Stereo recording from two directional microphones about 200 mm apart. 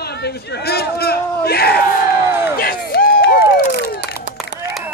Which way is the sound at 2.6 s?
45° left (ahead or behind).